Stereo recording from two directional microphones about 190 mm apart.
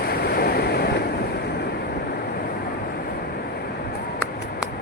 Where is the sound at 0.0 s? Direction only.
55° left (ahead or behind).